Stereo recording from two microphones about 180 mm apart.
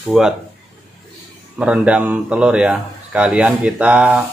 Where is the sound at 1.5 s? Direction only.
5° right (ahead or behind).